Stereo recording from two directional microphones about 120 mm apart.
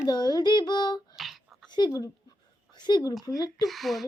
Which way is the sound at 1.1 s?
Centre (ahead or behind).